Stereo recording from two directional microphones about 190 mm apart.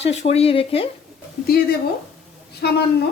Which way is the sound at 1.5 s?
55° left (ahead or behind).